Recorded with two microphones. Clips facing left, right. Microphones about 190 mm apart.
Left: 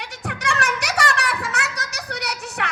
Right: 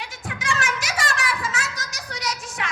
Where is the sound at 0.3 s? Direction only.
60° left (ahead or behind).